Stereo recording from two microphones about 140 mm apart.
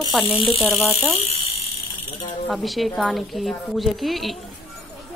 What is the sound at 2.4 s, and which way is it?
A woman's voice, centre (ahead or behind).